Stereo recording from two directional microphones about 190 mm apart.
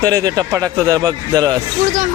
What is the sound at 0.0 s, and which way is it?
A man's voice, 20° right (ahead or behind).